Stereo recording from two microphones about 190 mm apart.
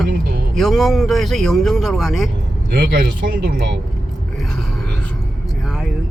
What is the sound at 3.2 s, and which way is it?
Speech, 55° right (ahead or behind).